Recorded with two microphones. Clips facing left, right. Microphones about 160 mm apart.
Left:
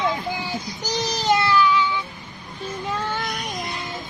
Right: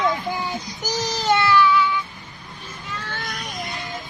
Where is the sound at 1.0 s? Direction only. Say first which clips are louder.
Even; 20° left (ahead or behind).